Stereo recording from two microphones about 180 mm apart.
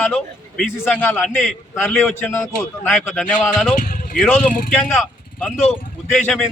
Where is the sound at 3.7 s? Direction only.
50° left (ahead or behind).